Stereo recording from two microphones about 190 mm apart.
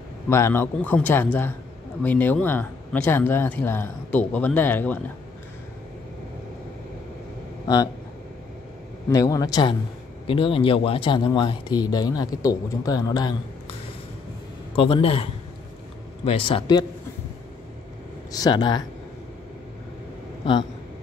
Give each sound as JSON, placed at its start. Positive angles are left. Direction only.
{"t": 0.3, "sound": "speech", "side_deg": 15}
{"t": 7.6, "sound": "speech", "side_deg": 20}
{"t": 9.1, "sound": "speech", "side_deg": 20}
{"t": 14.8, "sound": "speech", "side_deg": 30}
{"t": 16.3, "sound": "speech", "side_deg": 30}
{"t": 18.3, "sound": "speech", "side_deg": 20}